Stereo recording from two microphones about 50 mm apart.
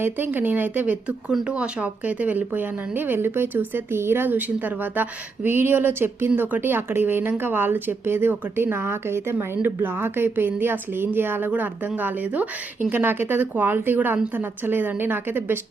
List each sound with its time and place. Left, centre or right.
0.3 s speech: right
1.5 s a woman's voice: right
9.6 s a woman's voice: right